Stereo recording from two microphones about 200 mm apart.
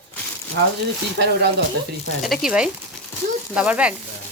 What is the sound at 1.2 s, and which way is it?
Speech, 55° right (ahead or behind).